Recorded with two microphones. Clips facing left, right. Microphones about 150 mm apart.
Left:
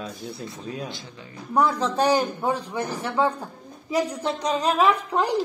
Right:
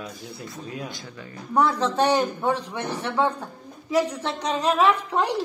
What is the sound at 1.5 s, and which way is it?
A man's voice, 10° left (ahead or behind).